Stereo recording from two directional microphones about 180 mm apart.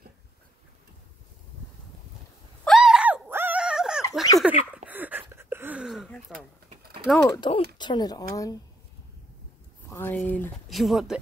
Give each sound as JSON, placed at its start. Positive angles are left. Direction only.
{"t": 2.6, "sound": "groan", "side_deg": 0}
{"t": 4.4, "sound": "speech", "side_deg": -5}
{"t": 4.8, "sound": "a sound", "side_deg": -10}
{"t": 6.3, "sound": "a sound", "side_deg": -60}
{"t": 7.2, "sound": "speech", "side_deg": 25}
{"t": 9.8, "sound": "speech", "side_deg": 10}